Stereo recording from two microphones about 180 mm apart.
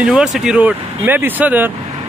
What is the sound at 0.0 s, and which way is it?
Speech, 5° right (ahead or behind).